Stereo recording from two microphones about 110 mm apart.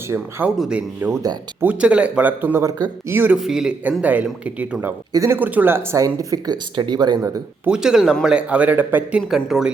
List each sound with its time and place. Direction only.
0.1 s speech: 10° right (ahead or behind)
2.6 s speech: 35° right (ahead or behind)
3.1 s speech: 20° right (ahead or behind)
3.3 s speech: 5° right (ahead or behind)
5.1 s speech: 25° right (ahead or behind)
5.4 s speech: 15° right (ahead or behind); by 7.2 s 40° right (ahead or behind)
7.6 s speech: 5° right (ahead or behind)
9.3 s speech: 5° right (ahead or behind)